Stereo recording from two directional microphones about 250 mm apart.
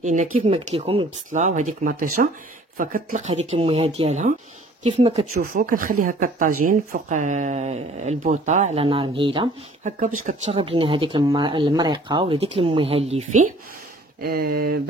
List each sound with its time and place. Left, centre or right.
0.0 s speech: right
9.9 s speech: right
14.2 s speech: right